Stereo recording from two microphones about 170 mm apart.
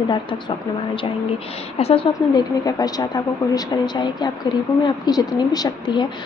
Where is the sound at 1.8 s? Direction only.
35° left (ahead or behind).